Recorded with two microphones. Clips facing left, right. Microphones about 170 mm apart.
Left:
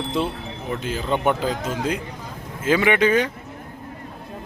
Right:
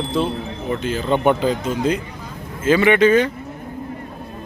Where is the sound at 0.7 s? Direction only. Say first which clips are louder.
Right 4 dB; 10° left (ahead or behind).